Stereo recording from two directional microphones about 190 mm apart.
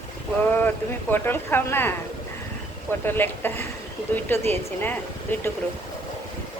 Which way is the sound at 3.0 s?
10° left (ahead or behind).